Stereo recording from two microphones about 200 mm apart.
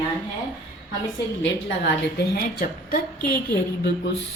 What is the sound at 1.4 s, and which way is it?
A woman's voice, 60° left (ahead or behind).